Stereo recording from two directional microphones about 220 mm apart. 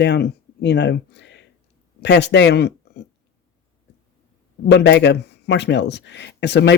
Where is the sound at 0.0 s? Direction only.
50° left (ahead or behind).